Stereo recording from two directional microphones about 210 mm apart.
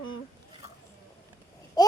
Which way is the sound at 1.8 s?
20° left (ahead or behind).